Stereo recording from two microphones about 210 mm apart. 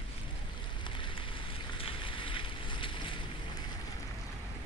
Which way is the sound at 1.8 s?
25° left (ahead or behind).